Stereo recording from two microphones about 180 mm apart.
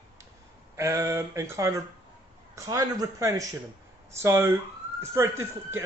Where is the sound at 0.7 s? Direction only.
15° right (ahead or behind).